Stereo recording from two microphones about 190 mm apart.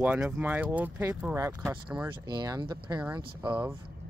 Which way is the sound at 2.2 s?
20° right (ahead or behind).